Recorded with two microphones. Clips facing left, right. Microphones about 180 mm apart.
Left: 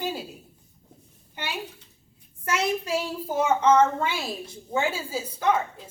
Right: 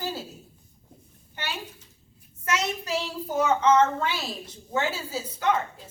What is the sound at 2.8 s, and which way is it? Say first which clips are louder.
A woman's voice: left 2 dB; 10° left (ahead or behind).